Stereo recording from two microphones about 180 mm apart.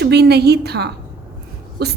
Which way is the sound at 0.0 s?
65° right (ahead or behind).